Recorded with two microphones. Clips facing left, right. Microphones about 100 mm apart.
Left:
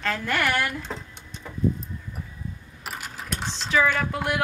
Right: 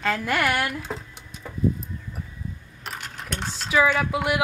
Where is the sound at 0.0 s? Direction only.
10° right (ahead or behind).